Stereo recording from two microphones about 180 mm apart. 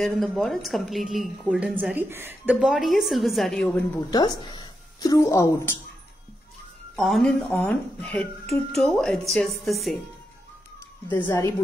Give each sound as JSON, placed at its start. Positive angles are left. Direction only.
{"t": 0.0, "sound": "a woman's voice", "side_deg": 0}
{"t": 3.7, "sound": "a woman's voice", "side_deg": 20}
{"t": 7.0, "sound": "a woman's voice", "side_deg": 0}
{"t": 11.2, "sound": "a woman's voice", "side_deg": 15}